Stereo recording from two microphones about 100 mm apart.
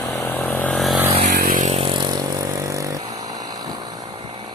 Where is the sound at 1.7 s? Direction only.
60° right (ahead or behind).